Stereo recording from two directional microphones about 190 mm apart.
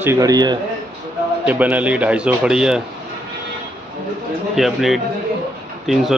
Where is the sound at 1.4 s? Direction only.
10° right (ahead or behind).